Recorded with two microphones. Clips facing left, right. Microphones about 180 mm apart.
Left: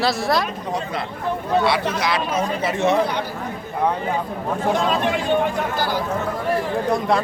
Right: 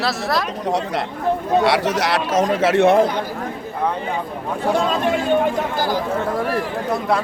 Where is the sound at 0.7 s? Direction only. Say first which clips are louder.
Right 5 dB; 80° right.